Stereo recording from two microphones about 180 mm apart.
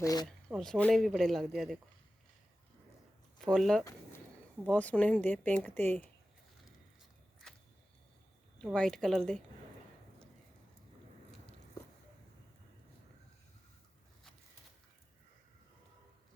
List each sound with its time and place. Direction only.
0.0 s speech: 20° left (ahead or behind)
0.3 s speech: 5° left (ahead or behind)
3.3 s speech: 5° left (ahead or behind)
8.6 s speech: 5° left (ahead or behind)